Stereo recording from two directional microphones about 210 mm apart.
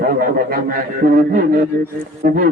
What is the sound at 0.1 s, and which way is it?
A man's voice, 45° right (ahead or behind).